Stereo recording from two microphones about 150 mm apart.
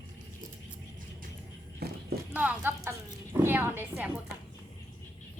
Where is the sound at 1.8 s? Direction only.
90° right.